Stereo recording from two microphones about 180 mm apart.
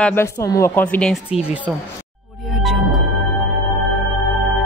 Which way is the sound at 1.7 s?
10° right (ahead or behind).